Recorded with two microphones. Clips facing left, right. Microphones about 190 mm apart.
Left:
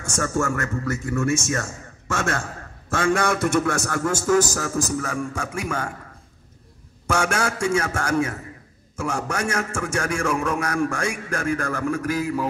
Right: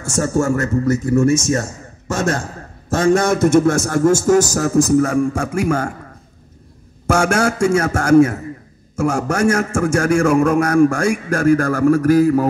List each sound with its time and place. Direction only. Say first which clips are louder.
0.1 s a man's voice: right 7 dB; 35° right (ahead or behind)
7.1 s a man's voice: right 7 dB; 40° right (ahead or behind)